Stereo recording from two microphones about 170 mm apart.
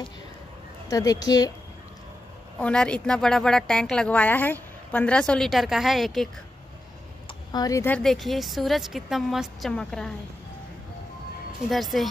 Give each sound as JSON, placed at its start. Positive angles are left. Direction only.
{"t": 0.8, "sound": "a woman's voice", "side_deg": 20}
{"t": 2.6, "sound": "a woman's voice", "side_deg": 5}
{"t": 7.5, "sound": "speech", "side_deg": 20}
{"t": 8.0, "sound": "a woman's voice", "side_deg": 0}
{"t": 11.7, "sound": "a woman's voice", "side_deg": 0}